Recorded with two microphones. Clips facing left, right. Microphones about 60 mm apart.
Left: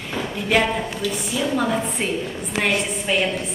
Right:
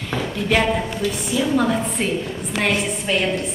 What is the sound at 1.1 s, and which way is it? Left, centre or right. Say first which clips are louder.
A woman's voice: right 4 dB; centre.